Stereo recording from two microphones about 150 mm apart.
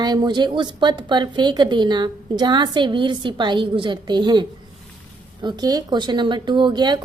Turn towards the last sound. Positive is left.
turn(degrees=-30)  # may be behind; listen again after turning